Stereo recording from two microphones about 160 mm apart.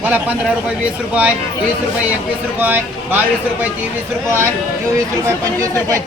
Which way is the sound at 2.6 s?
10° right (ahead or behind).